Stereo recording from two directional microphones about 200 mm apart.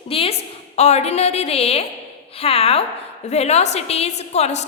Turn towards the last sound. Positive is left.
turn(degrees=35)  # may be behind; listen again after turning